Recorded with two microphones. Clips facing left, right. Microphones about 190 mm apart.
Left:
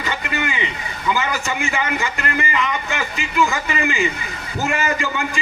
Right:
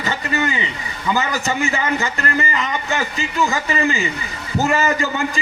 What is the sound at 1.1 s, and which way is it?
A man's voice, 40° right (ahead or behind).